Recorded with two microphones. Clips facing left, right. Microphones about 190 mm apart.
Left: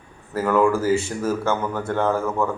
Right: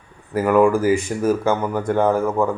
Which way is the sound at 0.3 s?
15° right (ahead or behind).